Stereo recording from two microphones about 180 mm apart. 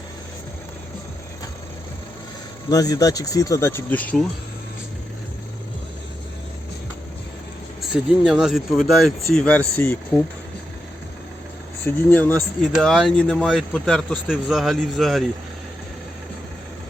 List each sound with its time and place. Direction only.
2.6 s speech: 20° left (ahead or behind)
7.8 s speech: 5° right (ahead or behind); by 10.2 s 15° left (ahead or behind)
11.9 s speech: 10° left (ahead or behind)